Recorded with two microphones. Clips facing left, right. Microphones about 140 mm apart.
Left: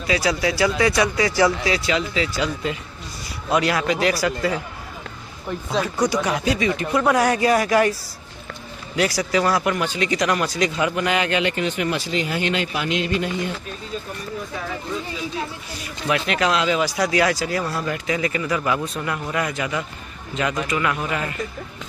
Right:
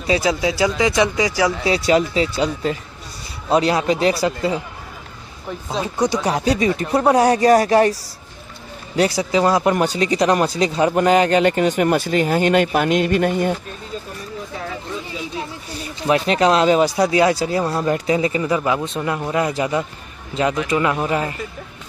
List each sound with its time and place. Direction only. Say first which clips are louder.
0.0 s speech: right 3 dB; 25° right (ahead or behind)
1.6 s speech: right 6 dB; 35° right (ahead or behind)
5.8 s speech: right 1 dB; 25° right (ahead or behind)
6.2 s speech: right 3 dB; 35° right (ahead or behind)
8.9 s speech: right 3 dB; 30° right (ahead or behind); by 13.6 s 50° right (ahead or behind)
15.8 s speech: right 5 dB; 35° right (ahead or behind)